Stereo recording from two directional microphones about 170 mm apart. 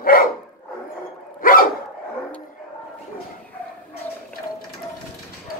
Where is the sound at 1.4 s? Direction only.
55° left (ahead or behind).